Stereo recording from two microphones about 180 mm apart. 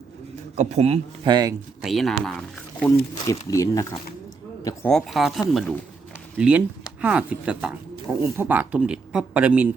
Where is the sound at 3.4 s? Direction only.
20° left (ahead or behind).